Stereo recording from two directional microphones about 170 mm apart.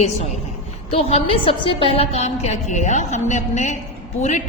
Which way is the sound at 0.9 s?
35° left (ahead or behind).